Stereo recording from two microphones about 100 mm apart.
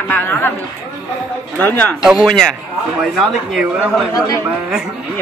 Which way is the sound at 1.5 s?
15° left (ahead or behind).